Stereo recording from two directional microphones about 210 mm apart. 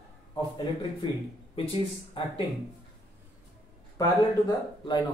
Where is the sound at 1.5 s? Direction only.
25° left (ahead or behind).